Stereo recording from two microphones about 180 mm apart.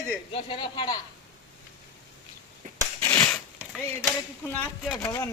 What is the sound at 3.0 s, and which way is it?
Crushing, 10° left (ahead or behind).